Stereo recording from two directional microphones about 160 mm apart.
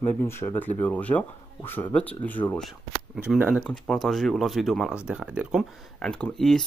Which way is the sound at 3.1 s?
5° right (ahead or behind).